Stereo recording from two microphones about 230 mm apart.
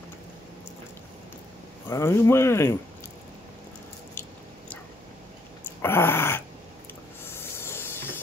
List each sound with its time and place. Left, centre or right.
1.9 s speech: centre
4.1 s biting: centre
5.8 s dog: centre
7.2 s hiss: centre